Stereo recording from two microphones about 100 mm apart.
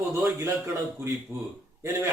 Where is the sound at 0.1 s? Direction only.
25° right (ahead or behind).